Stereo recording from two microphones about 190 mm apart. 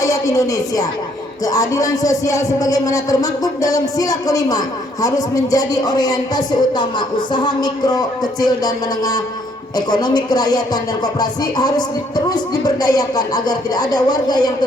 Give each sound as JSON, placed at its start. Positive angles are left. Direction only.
{"t": 0.0, "sound": "a woman's voice", "side_deg": 20}
{"t": 1.5, "sound": "music", "side_deg": 20}